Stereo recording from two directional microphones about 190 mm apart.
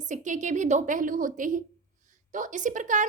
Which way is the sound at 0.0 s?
40° right (ahead or behind).